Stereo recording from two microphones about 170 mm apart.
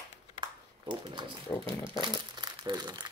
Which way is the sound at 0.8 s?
30° right (ahead or behind).